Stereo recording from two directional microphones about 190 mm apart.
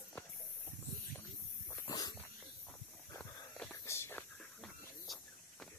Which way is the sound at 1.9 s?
20° left (ahead or behind).